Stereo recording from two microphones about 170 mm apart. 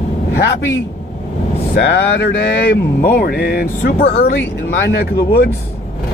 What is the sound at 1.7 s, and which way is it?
Speech, 80° left.